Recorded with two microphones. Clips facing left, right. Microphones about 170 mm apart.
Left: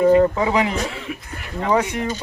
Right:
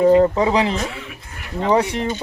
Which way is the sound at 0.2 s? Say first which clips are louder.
Right 1 dB; 30° right (ahead or behind).